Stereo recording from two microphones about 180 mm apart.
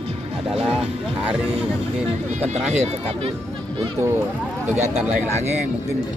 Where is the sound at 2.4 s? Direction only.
35° right (ahead or behind).